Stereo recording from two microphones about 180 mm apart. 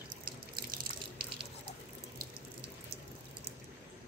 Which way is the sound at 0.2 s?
55° right (ahead or behind).